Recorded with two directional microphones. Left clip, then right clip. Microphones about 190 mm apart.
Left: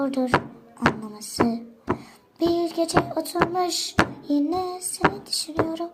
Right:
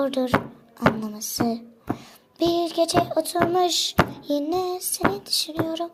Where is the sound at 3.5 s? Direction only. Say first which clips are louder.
Right 3 dB; 40° right (ahead or behind).